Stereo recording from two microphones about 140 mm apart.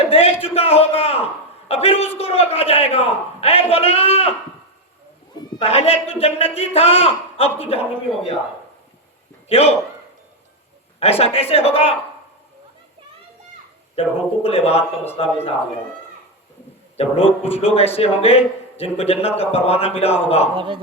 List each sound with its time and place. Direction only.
0.0 s a sound: 45° left (ahead or behind)
0.4 s a man's voice: 45° left (ahead or behind)
5.5 s a man's voice: 45° left (ahead or behind)
9.5 s a man's voice: 45° left (ahead or behind)
11.0 s a man's voice: 45° left (ahead or behind)
13.9 s a man's voice: 45° left (ahead or behind)
17.0 s a man's voice: 45° left (ahead or behind)